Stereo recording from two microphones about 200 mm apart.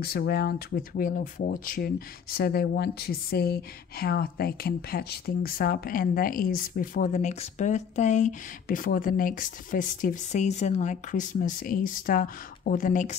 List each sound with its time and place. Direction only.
0.0 s speech: 50° left (ahead or behind)